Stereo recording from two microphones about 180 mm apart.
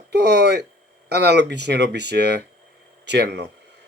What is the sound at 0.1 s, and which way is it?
Speech, 70° right (ahead or behind).